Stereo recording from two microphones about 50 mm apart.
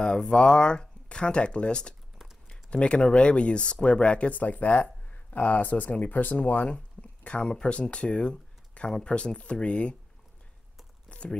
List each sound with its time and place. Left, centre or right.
0.0 s speech: centre
11.1 s crumpling: left